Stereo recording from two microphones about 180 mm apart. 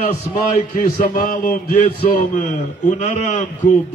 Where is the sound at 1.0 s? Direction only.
50° left (ahead or behind).